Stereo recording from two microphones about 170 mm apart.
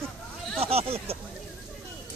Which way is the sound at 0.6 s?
35° right (ahead or behind).